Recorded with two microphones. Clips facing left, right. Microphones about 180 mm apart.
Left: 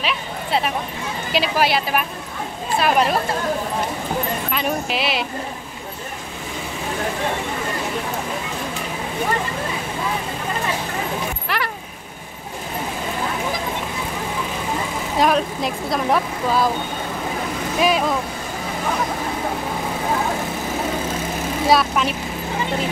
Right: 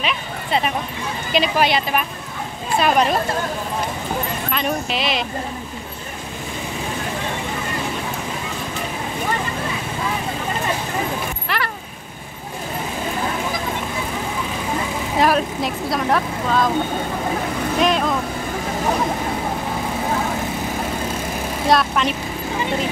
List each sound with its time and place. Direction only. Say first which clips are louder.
0.0 s a sound: even; centre (ahead or behind)
1.3 s speech: right 1 dB; 5° left (ahead or behind)
4.5 s speech: even; 10° left (ahead or behind)
11.4 s speech: even; 10° left (ahead or behind)
15.1 s speech: even; centre (ahead or behind)
17.7 s speech: even; 5° left (ahead or behind)
21.6 s speech: even; 5° left (ahead or behind)